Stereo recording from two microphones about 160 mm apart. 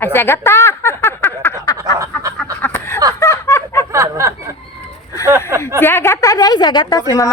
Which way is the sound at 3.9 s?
20° right (ahead or behind).